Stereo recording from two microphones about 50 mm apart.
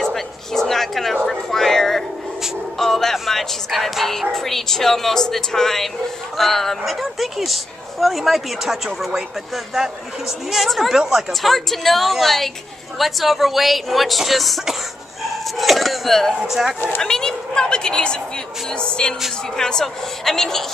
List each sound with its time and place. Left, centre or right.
0.0 s a sound: centre
2.8 s speech: centre
11.5 s speech: centre
16.4 s speech: centre
17.0 s speech: centre